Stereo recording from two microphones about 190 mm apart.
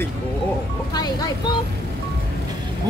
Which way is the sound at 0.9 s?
20° left (ahead or behind).